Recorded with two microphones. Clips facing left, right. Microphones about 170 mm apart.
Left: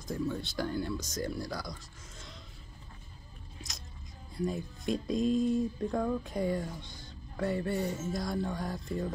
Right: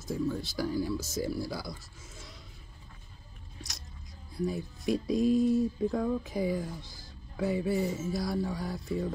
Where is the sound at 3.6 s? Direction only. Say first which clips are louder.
Right 1 dB; centre (ahead or behind).